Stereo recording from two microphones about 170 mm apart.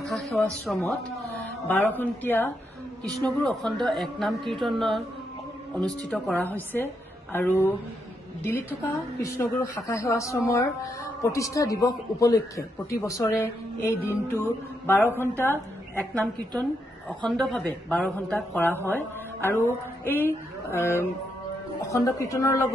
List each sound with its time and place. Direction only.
0.0 s speech: centre (ahead or behind)
6.1 s a woman's voice: 5° left (ahead or behind)